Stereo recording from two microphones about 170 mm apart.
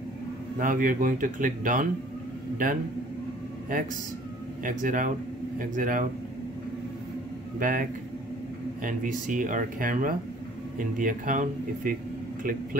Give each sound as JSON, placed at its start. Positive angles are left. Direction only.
{"t": 0.6, "sound": "a man's voice", "side_deg": -50}
{"t": 4.6, "sound": "speech", "side_deg": -50}
{"t": 7.5, "sound": "a man's voice", "side_deg": -55}